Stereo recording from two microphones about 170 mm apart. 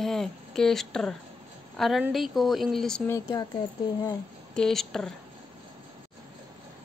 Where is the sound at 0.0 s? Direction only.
Centre (ahead or behind).